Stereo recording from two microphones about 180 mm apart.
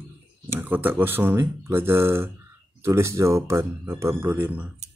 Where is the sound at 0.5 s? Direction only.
10° right (ahead or behind).